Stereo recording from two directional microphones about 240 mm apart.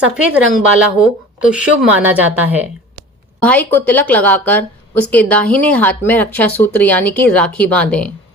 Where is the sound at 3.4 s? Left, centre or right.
Centre.